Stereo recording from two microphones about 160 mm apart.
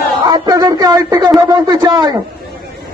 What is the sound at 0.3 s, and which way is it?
Speech, 25° right (ahead or behind).